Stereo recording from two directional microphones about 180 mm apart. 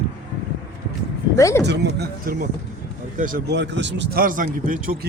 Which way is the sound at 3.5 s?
75° right (ahead or behind).